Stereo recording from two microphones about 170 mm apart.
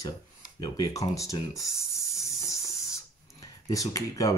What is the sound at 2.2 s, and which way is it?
Spray, 20° left (ahead or behind).